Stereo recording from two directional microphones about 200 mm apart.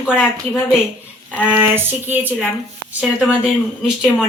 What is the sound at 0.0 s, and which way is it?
Speech, 10° left (ahead or behind).